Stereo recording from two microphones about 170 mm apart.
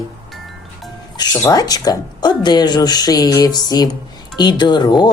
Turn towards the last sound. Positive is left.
turn(degrees=25)  # may be behind; listen again after turning